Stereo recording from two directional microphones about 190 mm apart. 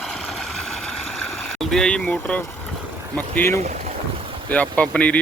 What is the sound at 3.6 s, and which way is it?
Boat, 35° right (ahead or behind).